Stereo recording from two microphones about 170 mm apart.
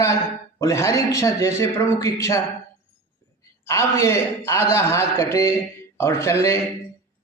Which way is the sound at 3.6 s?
15° left (ahead or behind).